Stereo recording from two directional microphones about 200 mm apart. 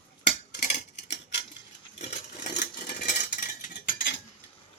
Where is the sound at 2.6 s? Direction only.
40° left (ahead or behind).